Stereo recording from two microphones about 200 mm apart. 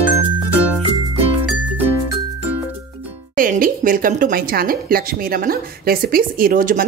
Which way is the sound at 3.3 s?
45° right (ahead or behind).